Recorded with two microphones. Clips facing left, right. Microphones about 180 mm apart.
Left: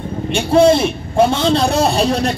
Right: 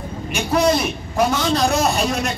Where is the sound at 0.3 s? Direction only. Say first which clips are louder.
Left 7 dB; 30° left (ahead or behind).